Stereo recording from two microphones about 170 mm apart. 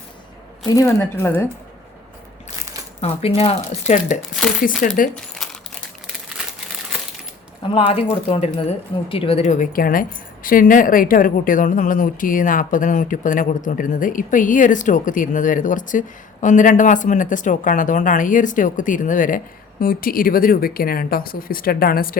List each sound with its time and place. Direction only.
0.7 s speech: 15° left (ahead or behind)
3.0 s speech: 35° left (ahead or behind)
4.6 s a woman's voice: 55° left (ahead or behind)
5.1 s crumpling: centre (ahead or behind)
7.6 s a woman's voice: 30° left (ahead or behind); by 22.2 s 60° left (ahead or behind)